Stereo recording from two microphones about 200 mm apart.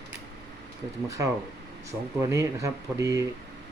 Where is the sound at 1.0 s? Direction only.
15° right (ahead or behind).